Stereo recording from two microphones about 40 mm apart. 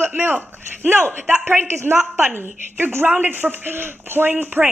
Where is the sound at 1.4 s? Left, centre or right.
Right.